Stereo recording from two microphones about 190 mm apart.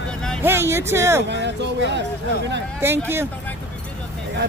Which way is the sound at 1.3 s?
65° right (ahead or behind).